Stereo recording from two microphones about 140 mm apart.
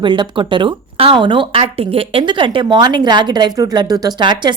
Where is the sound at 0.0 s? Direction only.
35° right (ahead or behind).